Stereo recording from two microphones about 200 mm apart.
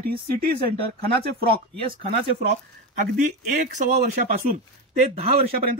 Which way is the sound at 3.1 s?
40° right (ahead or behind).